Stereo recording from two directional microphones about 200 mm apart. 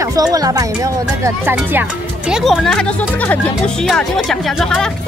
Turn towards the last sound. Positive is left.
turn(degrees=5)  # may be behind; listen again after turning